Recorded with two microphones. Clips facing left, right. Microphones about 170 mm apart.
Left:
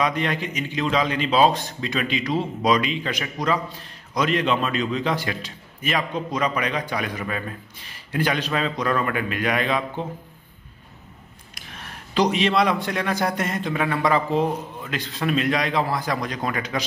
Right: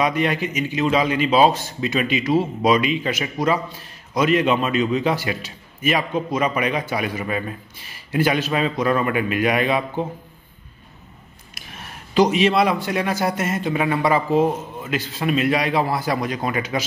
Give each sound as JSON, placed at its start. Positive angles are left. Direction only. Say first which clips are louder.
{"t": 0.0, "sound": "a man's voice", "louder": "right 3 dB", "side_deg": -10}
{"t": 11.5, "sound": "a man's voice", "louder": "right 1 dB", "side_deg": -5}